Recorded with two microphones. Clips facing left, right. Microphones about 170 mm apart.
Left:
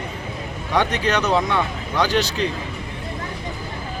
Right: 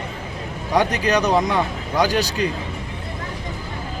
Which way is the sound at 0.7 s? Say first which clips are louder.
Right 2 dB; 40° right (ahead or behind).